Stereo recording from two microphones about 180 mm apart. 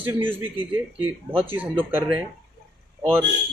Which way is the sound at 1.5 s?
10° right (ahead or behind).